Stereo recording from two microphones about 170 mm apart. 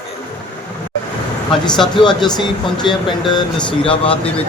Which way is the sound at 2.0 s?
25° left (ahead or behind).